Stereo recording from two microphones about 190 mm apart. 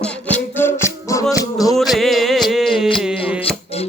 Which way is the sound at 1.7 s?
Centre (ahead or behind).